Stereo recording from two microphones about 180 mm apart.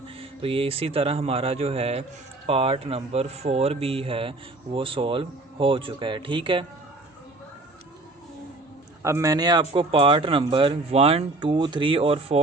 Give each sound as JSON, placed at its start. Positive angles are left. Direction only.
{"t": 0.2, "sound": "speech", "side_deg": -30}
{"t": 9.0, "sound": "speech", "side_deg": -15}